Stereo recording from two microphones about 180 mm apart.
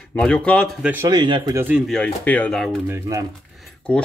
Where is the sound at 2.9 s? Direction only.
20° right (ahead or behind).